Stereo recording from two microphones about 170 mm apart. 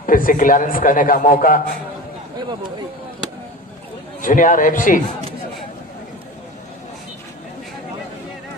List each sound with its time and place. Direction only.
0.0 s a man's voice: 55° left (ahead or behind)
2.5 s speech: 25° right (ahead or behind)
4.2 s a man's voice: 50° left (ahead or behind)